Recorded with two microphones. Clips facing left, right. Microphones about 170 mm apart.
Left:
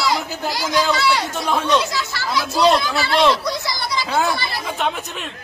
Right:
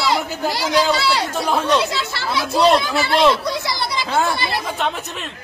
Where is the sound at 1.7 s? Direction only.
30° right (ahead or behind).